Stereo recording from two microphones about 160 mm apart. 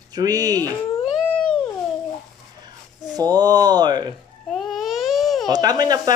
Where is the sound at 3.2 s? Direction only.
25° right (ahead or behind).